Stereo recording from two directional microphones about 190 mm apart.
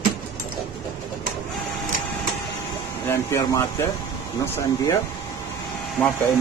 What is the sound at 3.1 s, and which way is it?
Speech, 15° left (ahead or behind).